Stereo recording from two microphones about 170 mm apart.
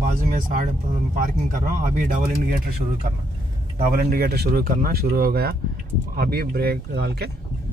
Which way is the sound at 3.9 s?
60° right (ahead or behind).